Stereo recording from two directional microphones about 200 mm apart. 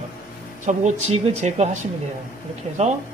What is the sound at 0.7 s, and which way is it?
A woman's voice, 35° right (ahead or behind).